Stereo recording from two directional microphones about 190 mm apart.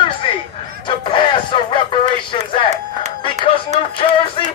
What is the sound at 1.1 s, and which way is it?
Speech, 25° left (ahead or behind).